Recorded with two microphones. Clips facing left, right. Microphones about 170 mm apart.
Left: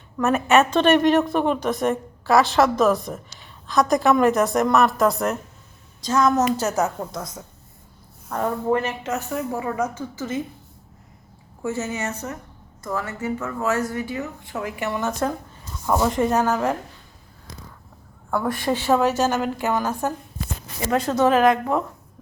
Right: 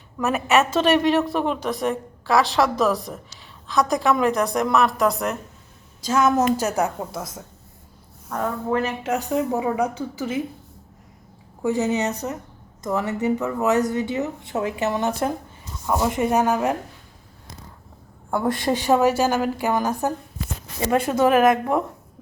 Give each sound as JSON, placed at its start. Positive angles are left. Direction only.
{"t": 0.2, "sound": "a woman's voice", "side_deg": 0}
{"t": 8.3, "sound": "a woman's voice", "side_deg": 0}
{"t": 9.0, "sound": "a woman's voice", "side_deg": -15}
{"t": 11.6, "sound": "a woman's voice", "side_deg": -15}
{"t": 15.9, "sound": "a woman's voice", "side_deg": -10}
{"t": 18.3, "sound": "a woman's voice", "side_deg": -20}